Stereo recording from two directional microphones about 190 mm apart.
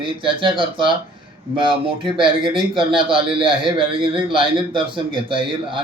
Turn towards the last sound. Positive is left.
turn(degrees=-25)  # may be behind; listen again after turning